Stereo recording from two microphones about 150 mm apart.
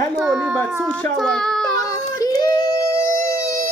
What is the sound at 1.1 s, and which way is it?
Child singing, 5° left (ahead or behind).